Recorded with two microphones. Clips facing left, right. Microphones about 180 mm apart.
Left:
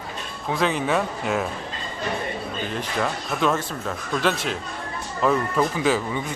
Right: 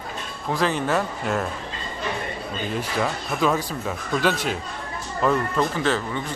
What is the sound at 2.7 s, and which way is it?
Speech, centre (ahead or behind).